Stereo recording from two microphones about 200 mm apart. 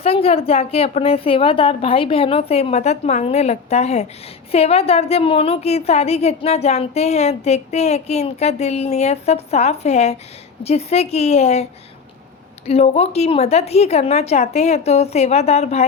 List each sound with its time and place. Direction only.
0.0 s a woman's voice: 30° left (ahead or behind)